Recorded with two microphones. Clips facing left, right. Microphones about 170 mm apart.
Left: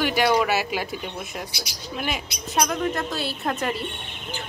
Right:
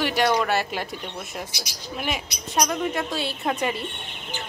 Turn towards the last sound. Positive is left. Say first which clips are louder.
# right 1 dB
turn(degrees=0)  # may be behind; listen again after turning